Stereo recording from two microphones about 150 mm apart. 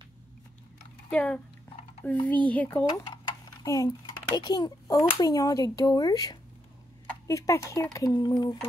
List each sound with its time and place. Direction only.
1.1 s a child's voice: 10° left (ahead or behind)
2.8 s a child's voice: 25° left (ahead or behind)